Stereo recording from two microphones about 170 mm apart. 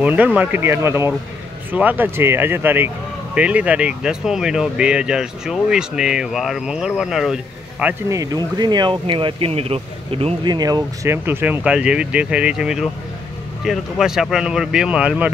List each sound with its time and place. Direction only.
0.0 s speech: 10° right (ahead or behind)
7.8 s speech: 20° right (ahead or behind)